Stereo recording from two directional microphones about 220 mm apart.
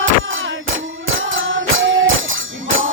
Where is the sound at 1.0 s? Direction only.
65° right (ahead or behind).